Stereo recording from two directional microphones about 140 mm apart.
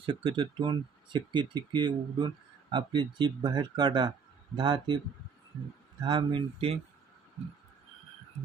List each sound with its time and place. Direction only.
0.0 s speech: 35° right (ahead or behind)
6.0 s speech: 35° right (ahead or behind)